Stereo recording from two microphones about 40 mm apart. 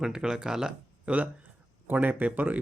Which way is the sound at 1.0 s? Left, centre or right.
Right.